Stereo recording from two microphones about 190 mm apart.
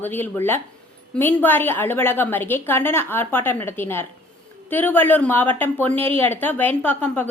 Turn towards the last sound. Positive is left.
turn(degrees=10)  # may be behind; listen again after turning